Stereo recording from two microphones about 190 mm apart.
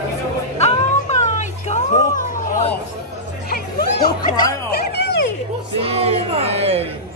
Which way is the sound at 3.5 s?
55° left (ahead or behind).